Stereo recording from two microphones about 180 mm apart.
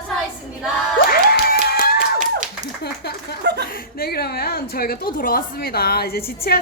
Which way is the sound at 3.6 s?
55° left (ahead or behind).